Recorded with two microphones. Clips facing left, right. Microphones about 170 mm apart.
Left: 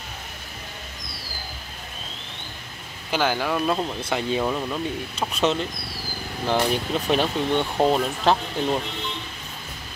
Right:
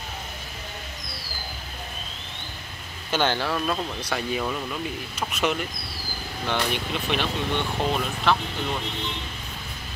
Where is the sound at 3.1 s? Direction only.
10° left (ahead or behind).